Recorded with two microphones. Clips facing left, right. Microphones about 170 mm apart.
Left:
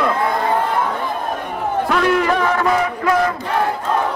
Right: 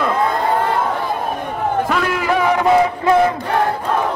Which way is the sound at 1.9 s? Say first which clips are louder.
Left 2 dB; centre (ahead or behind).